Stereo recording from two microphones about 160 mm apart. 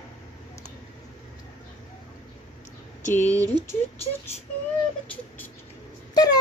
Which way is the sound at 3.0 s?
50° left (ahead or behind).